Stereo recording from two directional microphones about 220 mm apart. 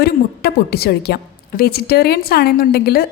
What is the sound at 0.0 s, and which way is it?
A woman's voice, 45° left (ahead or behind).